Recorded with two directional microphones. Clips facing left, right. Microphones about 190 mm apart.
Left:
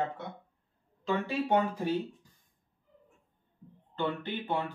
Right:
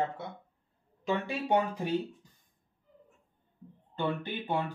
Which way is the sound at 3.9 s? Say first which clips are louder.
Even; 15° right (ahead or behind).